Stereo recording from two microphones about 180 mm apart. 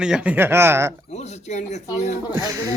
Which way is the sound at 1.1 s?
40° left (ahead or behind).